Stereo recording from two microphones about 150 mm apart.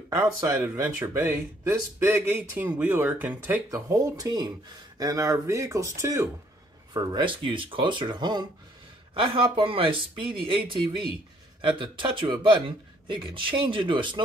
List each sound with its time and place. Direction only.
0.1 s speech: 20° right (ahead or behind); by 10.6 s 35° right (ahead or behind)
11.6 s speech: 35° right (ahead or behind)